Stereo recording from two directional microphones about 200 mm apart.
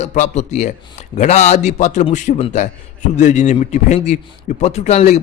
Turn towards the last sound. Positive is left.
turn(degrees=35)  # may be behind; listen again after turning